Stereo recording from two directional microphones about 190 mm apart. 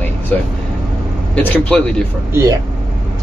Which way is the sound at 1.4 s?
5° left (ahead or behind).